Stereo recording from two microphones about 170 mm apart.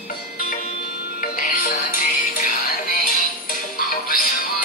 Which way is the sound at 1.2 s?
55° left (ahead or behind).